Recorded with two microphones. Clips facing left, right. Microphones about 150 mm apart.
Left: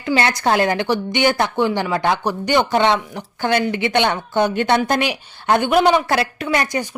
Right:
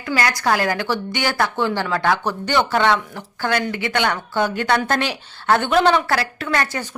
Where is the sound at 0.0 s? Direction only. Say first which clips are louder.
Left 3 dB; 25° left (ahead or behind).